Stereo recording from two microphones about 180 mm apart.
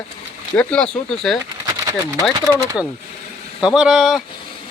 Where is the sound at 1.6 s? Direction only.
15° right (ahead or behind).